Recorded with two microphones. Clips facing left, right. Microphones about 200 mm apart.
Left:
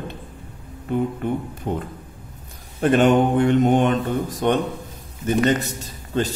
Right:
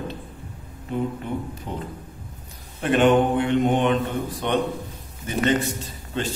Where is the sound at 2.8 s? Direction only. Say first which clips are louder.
Left 2 dB; 40° left (ahead or behind).